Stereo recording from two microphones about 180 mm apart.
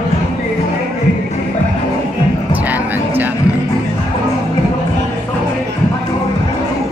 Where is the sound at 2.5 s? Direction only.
10° right (ahead or behind).